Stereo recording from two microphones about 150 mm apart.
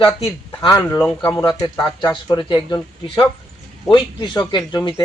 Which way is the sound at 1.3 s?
20° left (ahead or behind).